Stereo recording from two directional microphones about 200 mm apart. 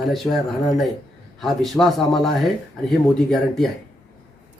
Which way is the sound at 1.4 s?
Centre (ahead or behind).